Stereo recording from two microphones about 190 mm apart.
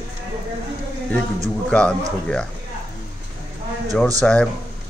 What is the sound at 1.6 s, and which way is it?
Speech, 5° left (ahead or behind).